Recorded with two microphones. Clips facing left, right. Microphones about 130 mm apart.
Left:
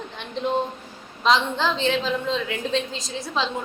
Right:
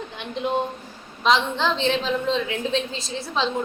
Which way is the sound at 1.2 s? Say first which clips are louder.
Even; centre (ahead or behind).